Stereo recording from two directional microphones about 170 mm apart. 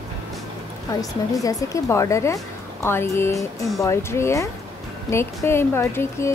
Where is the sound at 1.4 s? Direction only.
20° left (ahead or behind).